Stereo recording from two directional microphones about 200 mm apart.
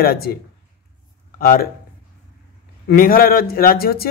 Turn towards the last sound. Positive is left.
turn(degrees=50)  # may be behind; listen again after turning